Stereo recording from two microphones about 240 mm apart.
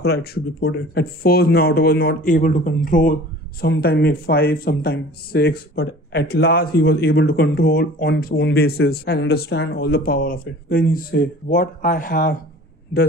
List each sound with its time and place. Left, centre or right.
0.0 s speech: left